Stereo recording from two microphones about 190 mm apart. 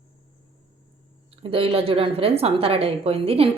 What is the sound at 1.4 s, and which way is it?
A woman's voice, 30° right (ahead or behind).